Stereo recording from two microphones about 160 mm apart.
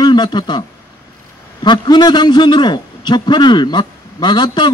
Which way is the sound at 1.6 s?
30° left (ahead or behind).